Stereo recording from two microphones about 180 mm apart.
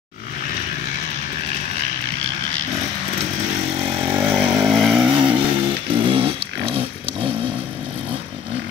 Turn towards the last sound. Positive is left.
turn(degrees=-30)  # may be behind; listen again after turning